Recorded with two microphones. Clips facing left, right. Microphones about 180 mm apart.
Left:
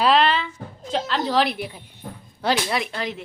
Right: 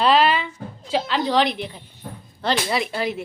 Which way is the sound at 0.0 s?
Centre (ahead or behind).